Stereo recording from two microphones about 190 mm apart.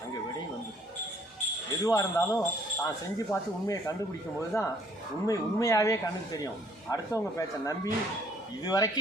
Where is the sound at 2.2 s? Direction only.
15° left (ahead or behind).